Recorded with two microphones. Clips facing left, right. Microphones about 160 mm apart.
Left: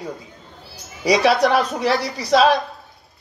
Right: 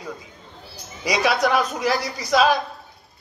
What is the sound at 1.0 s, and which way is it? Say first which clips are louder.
A woman's voice: left 5 dB; 30° left (ahead or behind).